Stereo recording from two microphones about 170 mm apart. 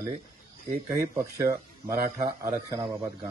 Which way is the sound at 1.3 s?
20° right (ahead or behind).